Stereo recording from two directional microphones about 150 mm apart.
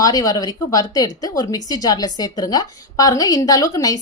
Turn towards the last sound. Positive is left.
turn(degrees=25)  # may be behind; listen again after turning